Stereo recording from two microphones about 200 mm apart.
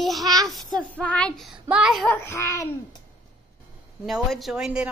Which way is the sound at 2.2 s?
15° left (ahead or behind).